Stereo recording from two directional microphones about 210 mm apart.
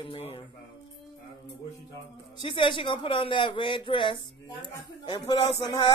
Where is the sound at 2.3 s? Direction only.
25° left (ahead or behind).